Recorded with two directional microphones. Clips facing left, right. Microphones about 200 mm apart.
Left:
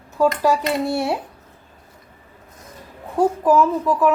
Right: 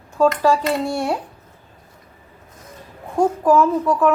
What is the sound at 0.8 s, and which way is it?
Speech, 5° left (ahead or behind).